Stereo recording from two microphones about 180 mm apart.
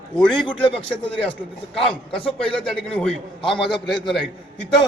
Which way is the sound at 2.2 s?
5° left (ahead or behind).